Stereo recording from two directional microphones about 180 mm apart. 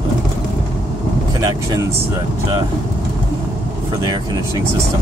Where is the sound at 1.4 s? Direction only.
20° right (ahead or behind).